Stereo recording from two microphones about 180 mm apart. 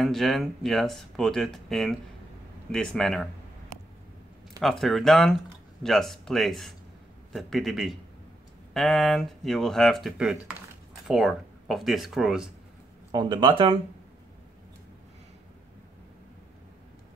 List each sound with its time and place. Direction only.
0.0 s speech: centre (ahead or behind)
4.6 s speech: centre (ahead or behind)
13.1 s speech: 25° right (ahead or behind)